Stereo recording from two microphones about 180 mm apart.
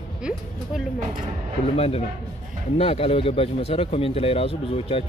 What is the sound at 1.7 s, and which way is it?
Speech, 35° left (ahead or behind).